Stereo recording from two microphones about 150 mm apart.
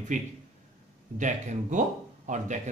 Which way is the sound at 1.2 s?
55° right (ahead or behind).